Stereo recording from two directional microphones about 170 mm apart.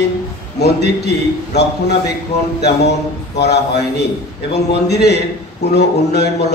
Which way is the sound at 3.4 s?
75° left (ahead or behind).